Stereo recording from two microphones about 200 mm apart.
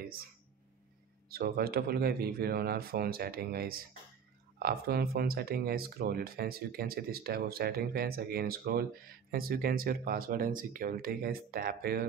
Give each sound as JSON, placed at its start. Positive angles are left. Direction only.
{"t": 1.3, "sound": "speech", "side_deg": -50}